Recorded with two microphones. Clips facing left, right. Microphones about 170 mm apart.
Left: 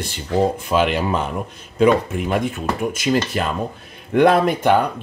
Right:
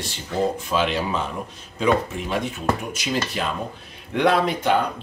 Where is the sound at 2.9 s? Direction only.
50° left (ahead or behind).